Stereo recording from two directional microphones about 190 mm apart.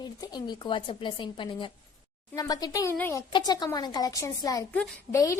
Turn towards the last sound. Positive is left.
turn(degrees=15)  # may be behind; listen again after turning